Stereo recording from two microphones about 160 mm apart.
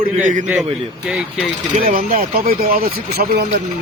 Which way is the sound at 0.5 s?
10° right (ahead or behind).